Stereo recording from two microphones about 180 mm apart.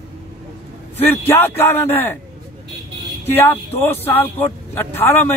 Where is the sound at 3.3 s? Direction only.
10° left (ahead or behind).